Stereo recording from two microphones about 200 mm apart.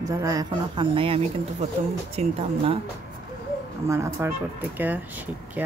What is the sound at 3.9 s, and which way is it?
Speech, 15° right (ahead or behind).